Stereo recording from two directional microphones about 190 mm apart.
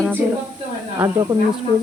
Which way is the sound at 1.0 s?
20° right (ahead or behind).